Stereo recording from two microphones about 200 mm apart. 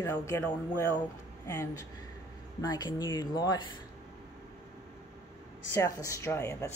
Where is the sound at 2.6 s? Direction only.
20° left (ahead or behind).